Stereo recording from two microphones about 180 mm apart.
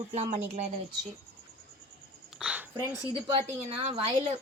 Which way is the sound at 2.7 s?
20° right (ahead or behind).